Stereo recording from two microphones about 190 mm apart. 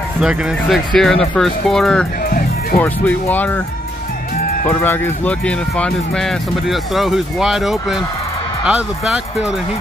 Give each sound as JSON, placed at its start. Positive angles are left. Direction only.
{"t": 0.2, "sound": "speech", "side_deg": 0}
{"t": 2.2, "sound": "music", "side_deg": 45}
{"t": 2.8, "sound": "speech", "side_deg": 10}
{"t": 4.6, "sound": "speech", "side_deg": 15}